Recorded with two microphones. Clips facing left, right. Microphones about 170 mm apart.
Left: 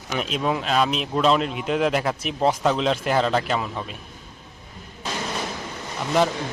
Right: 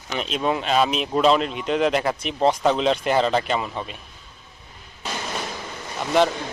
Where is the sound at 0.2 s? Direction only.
5° left (ahead or behind).